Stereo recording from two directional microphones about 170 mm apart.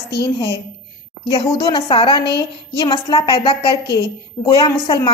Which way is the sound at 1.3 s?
25° left (ahead or behind).